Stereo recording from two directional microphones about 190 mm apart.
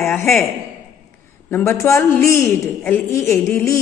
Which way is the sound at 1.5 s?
15° left (ahead or behind).